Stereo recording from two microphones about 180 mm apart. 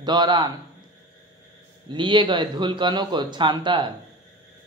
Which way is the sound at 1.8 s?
25° right (ahead or behind).